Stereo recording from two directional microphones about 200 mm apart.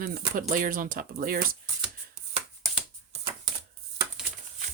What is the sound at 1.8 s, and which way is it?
Shuffling cards, 30° right (ahead or behind).